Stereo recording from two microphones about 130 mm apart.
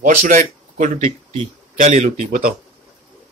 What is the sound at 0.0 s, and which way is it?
Speech, 85° right.